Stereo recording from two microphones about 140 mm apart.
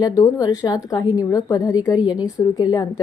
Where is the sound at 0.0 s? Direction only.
25° left (ahead or behind).